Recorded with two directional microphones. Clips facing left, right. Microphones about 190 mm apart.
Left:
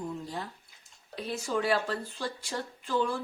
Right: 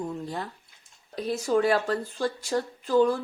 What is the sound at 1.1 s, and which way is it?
Speech, 40° right (ahead or behind).